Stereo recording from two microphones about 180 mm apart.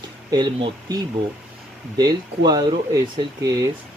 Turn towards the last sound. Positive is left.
turn(degrees=-20)  # may be behind; listen again after turning